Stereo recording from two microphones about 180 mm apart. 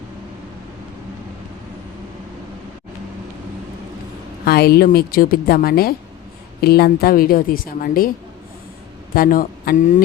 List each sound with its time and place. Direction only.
4.4 s a woman's voice: 60° left (ahead or behind)
9.1 s a man's voice: 50° left (ahead or behind)